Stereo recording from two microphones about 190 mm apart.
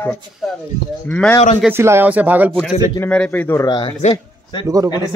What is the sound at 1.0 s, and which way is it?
Speech, 10° left (ahead or behind).